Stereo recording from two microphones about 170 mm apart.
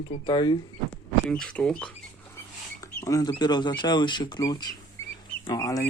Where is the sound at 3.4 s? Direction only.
25° left (ahead or behind).